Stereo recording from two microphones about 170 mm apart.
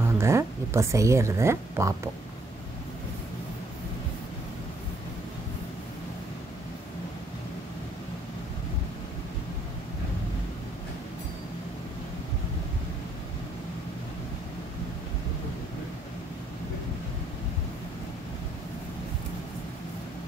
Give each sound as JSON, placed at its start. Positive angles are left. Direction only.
{"t": 0.0, "sound": "speech", "side_deg": -15}